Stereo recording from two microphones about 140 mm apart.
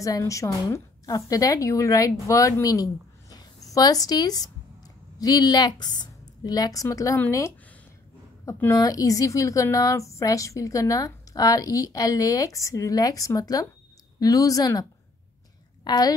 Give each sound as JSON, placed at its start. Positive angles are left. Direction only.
{"t": 0.0, "sound": "a woman's voice", "side_deg": 25}